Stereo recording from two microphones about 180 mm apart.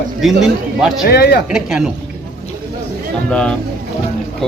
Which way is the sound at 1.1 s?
60° left (ahead or behind).